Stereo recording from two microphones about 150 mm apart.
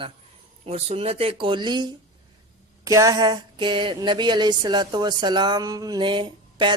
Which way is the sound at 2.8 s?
20° right (ahead or behind).